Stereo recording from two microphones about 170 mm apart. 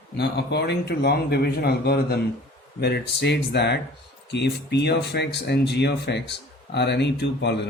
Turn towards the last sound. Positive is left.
turn(degrees=90)